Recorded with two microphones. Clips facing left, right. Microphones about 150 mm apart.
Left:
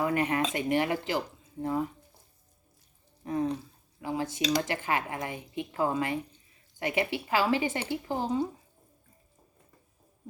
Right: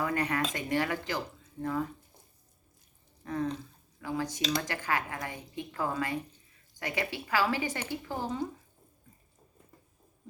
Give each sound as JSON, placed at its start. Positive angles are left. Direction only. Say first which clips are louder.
{"t": 0.0, "sound": "speech", "louder": "left 3 dB", "side_deg": 20}
{"t": 3.2, "sound": "speech", "louder": "left 3 dB", "side_deg": 20}